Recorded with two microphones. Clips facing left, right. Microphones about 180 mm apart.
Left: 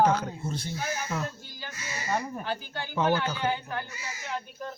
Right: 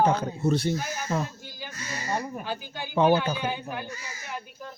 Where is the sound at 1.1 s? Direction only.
25° right (ahead or behind).